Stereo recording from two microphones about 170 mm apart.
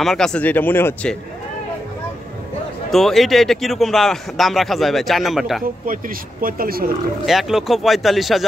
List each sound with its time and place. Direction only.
0.0 s speech: centre (ahead or behind)
2.9 s speech: centre (ahead or behind)
5.9 s speech: 55° right (ahead or behind)
7.2 s speech: centre (ahead or behind)